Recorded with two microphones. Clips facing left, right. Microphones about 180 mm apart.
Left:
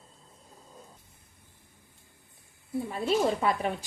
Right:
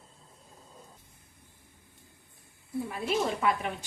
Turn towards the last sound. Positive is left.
turn(degrees=35)  # may be behind; listen again after turning